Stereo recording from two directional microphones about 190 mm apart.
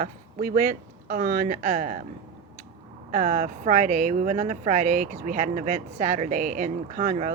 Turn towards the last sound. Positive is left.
turn(degrees=-45)  # may be behind; listen again after turning